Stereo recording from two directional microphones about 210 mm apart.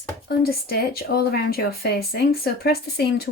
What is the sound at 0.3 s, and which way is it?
Speech, 50° left (ahead or behind).